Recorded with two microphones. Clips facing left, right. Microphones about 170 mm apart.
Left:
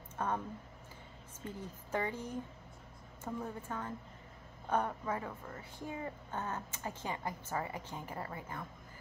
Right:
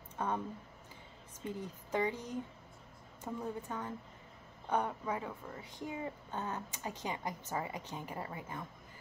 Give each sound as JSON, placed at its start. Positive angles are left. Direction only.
{"t": 0.2, "sound": "speech", "side_deg": -15}
{"t": 1.4, "sound": "speech", "side_deg": -15}